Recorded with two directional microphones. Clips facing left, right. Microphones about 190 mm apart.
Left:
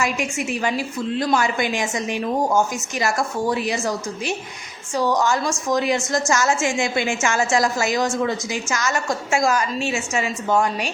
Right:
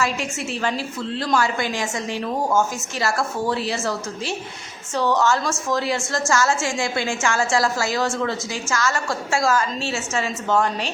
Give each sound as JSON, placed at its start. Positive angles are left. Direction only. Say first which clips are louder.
{"t": 0.0, "sound": "a woman's voice", "louder": "left 1 dB", "side_deg": 15}